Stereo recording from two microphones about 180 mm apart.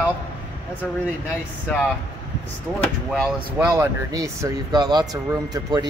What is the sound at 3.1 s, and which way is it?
Speech, 5° right (ahead or behind).